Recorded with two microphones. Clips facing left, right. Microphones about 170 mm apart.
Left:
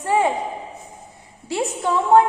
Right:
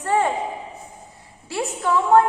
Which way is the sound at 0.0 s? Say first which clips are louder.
Left 1 dB; 10° left (ahead or behind).